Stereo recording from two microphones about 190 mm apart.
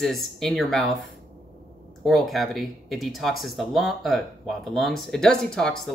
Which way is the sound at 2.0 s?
Centre (ahead or behind).